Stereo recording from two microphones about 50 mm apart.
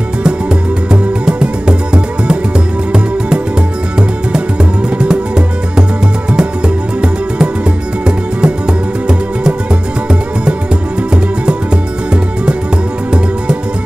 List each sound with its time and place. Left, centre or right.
0.2 s music: centre
4.8 s music: centre
11.4 s music: centre